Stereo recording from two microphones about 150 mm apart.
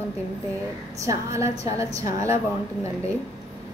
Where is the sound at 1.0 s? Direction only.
20° right (ahead or behind).